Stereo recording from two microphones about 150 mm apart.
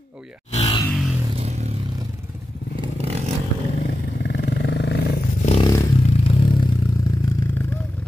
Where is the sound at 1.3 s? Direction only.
45° right (ahead or behind).